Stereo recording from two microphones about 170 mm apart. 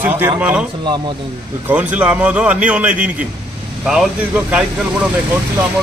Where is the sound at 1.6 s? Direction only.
10° right (ahead or behind).